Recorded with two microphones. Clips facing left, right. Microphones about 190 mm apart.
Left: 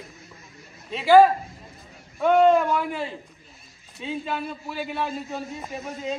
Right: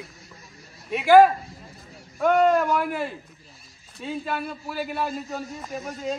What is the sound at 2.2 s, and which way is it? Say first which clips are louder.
A man's voice: left 2 dB; 5° right (ahead or behind).